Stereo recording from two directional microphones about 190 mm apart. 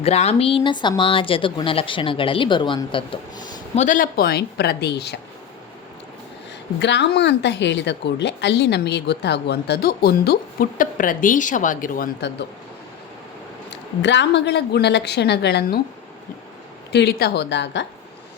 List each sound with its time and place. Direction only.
0.0 s speech: 35° left (ahead or behind)
3.8 s speech: 45° left (ahead or behind); by 5.1 s 60° left (ahead or behind)
6.7 s speech: 65° left (ahead or behind); by 12.0 s 45° left (ahead or behind)
13.7 s speech: 70° left (ahead or behind)
16.9 s speech: 60° left (ahead or behind)